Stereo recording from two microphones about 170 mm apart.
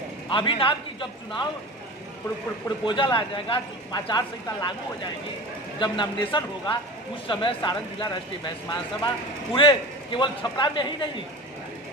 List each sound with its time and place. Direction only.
0.3 s speech: 30° left (ahead or behind)
2.8 s speech: 30° left (ahead or behind)